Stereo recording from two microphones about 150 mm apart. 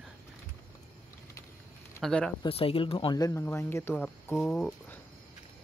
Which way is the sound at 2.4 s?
40° left (ahead or behind).